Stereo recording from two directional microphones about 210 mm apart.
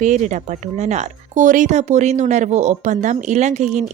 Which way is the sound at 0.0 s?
35° right (ahead or behind).